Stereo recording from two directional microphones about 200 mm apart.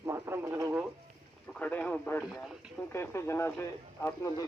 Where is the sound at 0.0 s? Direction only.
15° right (ahead or behind).